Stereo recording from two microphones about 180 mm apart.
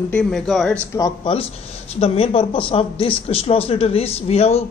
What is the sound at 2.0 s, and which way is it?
Speech, 35° left (ahead or behind).